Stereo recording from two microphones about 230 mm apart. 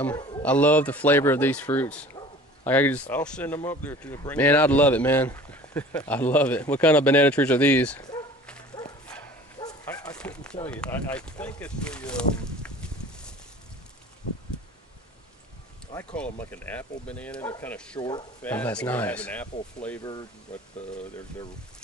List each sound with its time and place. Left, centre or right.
0.0 s a man's voice: centre
0.4 s speech: centre
9.6 s bow-wow: centre
10.1 s speech: centre
15.9 s speech: centre
17.9 s speech: centre
18.4 s speech: centre
20.0 s speech: centre